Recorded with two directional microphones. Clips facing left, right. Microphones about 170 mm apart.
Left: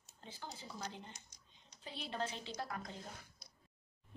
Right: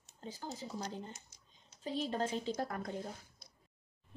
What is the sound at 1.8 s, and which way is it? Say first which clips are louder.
A woman's voice: right 7 dB; 45° right (ahead or behind).